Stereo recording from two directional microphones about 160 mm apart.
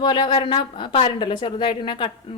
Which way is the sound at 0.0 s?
30° left (ahead or behind).